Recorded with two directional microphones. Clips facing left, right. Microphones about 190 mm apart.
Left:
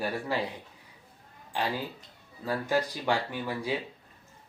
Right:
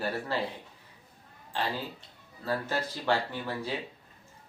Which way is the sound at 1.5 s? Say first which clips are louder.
Left 2 dB; 15° left (ahead or behind).